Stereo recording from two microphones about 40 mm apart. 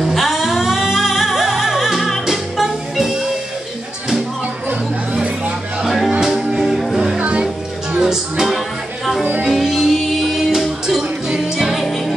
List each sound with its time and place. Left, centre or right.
0.0 s music: centre
5.8 s music: centre
6.2 s music: centre
6.6 s music: centre
7.2 s music: right
8.0 s music: centre
9.5 s music: centre